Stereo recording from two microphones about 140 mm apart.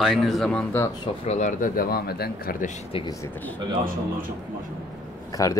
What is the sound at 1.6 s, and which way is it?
Speech, 90° left.